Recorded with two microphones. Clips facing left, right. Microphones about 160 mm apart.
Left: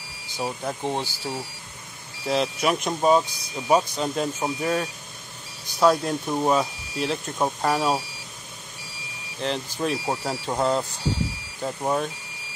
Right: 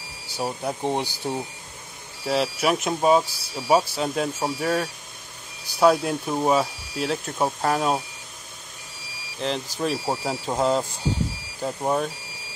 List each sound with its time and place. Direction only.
0.4 s speech: 10° right (ahead or behind)
2.2 s speech: 5° right (ahead or behind)
9.4 s speech: centre (ahead or behind)